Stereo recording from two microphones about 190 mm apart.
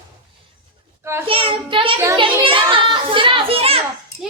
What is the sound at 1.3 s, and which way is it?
A child's voice, 30° right (ahead or behind).